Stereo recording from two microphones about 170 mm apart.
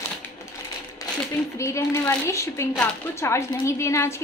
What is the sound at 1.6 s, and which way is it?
Speech, 15° left (ahead or behind).